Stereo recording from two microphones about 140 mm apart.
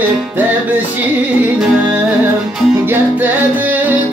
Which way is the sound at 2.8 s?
15° right (ahead or behind).